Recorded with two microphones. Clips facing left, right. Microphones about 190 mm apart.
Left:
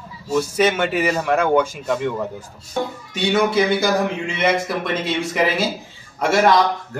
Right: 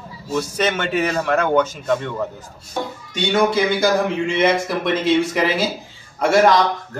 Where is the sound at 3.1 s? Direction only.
Centre (ahead or behind).